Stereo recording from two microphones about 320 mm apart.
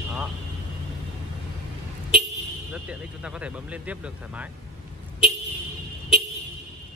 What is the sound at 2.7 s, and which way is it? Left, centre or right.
Speech, centre.